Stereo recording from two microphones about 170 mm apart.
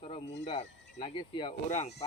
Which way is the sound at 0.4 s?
40° left (ahead or behind).